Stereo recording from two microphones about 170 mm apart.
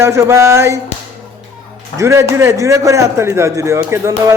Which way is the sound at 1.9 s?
15° right (ahead or behind).